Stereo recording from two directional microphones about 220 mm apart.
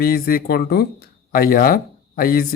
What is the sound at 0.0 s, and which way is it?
Speech, 40° left (ahead or behind).